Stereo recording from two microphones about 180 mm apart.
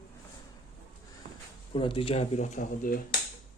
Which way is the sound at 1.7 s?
30° left (ahead or behind).